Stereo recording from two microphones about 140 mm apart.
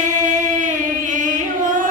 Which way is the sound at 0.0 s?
60° right (ahead or behind).